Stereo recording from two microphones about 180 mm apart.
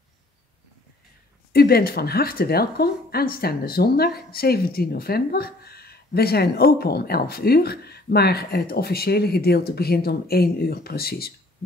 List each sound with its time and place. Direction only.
1.5 s speech: 55° left (ahead or behind)